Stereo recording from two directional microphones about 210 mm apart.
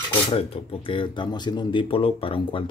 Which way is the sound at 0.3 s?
30° left (ahead or behind).